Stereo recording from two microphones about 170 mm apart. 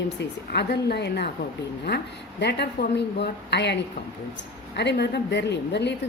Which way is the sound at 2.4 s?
80° left.